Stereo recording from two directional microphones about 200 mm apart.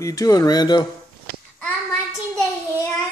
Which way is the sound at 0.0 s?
15° left (ahead or behind).